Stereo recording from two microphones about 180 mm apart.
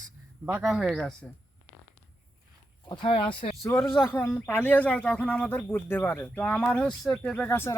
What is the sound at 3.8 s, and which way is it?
Speech, 5° right (ahead or behind).